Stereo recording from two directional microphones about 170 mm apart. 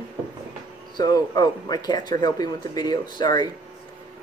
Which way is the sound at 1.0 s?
20° left (ahead or behind).